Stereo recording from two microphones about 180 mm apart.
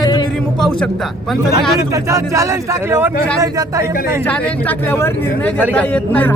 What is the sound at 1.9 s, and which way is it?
Speech, 15° right (ahead or behind).